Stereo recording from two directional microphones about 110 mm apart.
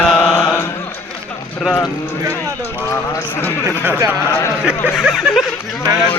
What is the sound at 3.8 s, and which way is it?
Speech, 15° right (ahead or behind).